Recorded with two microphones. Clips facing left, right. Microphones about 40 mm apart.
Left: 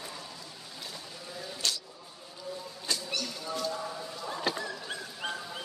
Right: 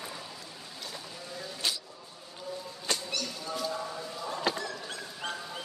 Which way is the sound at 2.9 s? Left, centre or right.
Right.